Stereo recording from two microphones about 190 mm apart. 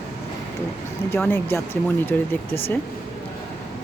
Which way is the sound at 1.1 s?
10° left (ahead or behind).